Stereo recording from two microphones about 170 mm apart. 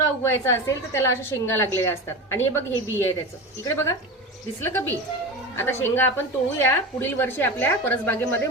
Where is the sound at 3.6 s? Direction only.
15° left (ahead or behind).